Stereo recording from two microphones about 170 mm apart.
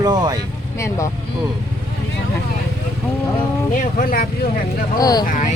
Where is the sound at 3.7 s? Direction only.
55° left (ahead or behind).